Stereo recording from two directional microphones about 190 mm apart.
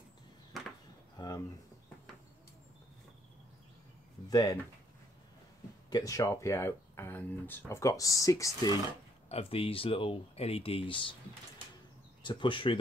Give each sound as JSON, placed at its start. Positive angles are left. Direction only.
{"t": 0.5, "sound": "a sound", "side_deg": 0}
{"t": 1.1, "sound": "a sound", "side_deg": 20}
{"t": 4.3, "sound": "speech", "side_deg": 20}
{"t": 5.9, "sound": "speech", "side_deg": 20}
{"t": 9.3, "sound": "speech", "side_deg": 30}
{"t": 12.2, "sound": "speech", "side_deg": 25}